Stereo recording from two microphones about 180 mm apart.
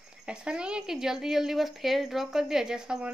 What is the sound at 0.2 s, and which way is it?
Speech, 5° right (ahead or behind).